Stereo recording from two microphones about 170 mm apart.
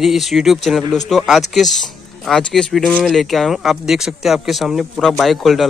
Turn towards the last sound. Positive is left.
turn(degrees=0)  # may be behind; listen again after turning